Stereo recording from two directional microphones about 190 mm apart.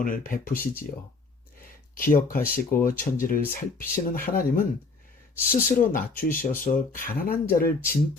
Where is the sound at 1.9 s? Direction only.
45° left (ahead or behind).